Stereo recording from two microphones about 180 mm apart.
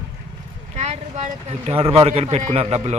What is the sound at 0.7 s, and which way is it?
Speech, 40° right (ahead or behind).